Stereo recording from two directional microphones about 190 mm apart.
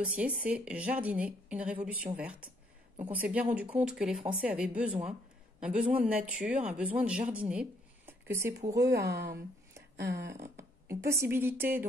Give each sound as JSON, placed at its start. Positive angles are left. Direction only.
{"t": 0.0, "sound": "a woman's voice", "side_deg": -5}
{"t": 8.9, "sound": "speech", "side_deg": -60}
{"t": 10.9, "sound": "a woman's voice", "side_deg": -15}